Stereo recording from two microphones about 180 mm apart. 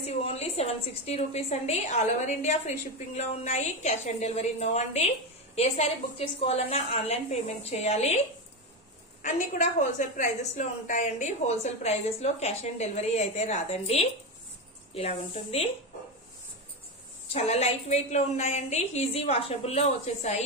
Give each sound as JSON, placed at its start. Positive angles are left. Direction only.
{"t": 0.0, "sound": "a woman's voice", "side_deg": 35}
{"t": 6.4, "sound": "a woman's voice", "side_deg": 35}
{"t": 9.2, "sound": "a woman's voice", "side_deg": 45}
{"t": 17.3, "sound": "a woman's voice", "side_deg": 35}